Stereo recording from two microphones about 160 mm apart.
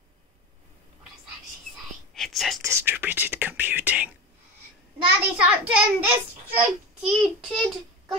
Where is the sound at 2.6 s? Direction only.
15° right (ahead or behind).